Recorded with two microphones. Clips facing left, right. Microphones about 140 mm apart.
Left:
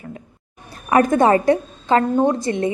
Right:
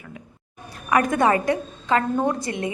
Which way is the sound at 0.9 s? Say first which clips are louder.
Left 5 dB; 30° left (ahead or behind).